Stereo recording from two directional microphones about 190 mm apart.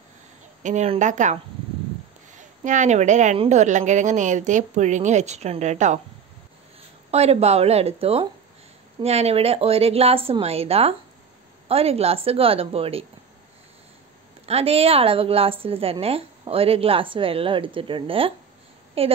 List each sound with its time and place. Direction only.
0.6 s a woman's voice: 40° right (ahead or behind)
7.1 s a woman's voice: 35° right (ahead or behind)
14.4 s a woman's voice: 30° right (ahead or behind)